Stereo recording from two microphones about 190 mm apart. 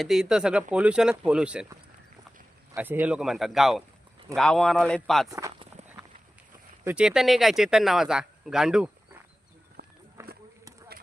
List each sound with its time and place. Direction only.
0.0 s speech: centre (ahead or behind)
2.7 s speech: 10° right (ahead or behind)
6.8 s speech: 5° right (ahead or behind)
9.8 s run: 55° right (ahead or behind)
10.2 s a sound: 15° right (ahead or behind)